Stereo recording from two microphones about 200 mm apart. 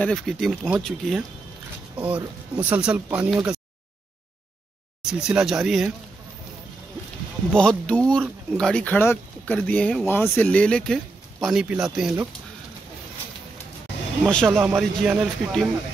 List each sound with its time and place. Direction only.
0.0 s speech: centre (ahead or behind)
5.2 s speech: 5° right (ahead or behind)
7.5 s speech: 5° left (ahead or behind)
14.3 s speech: 5° left (ahead or behind)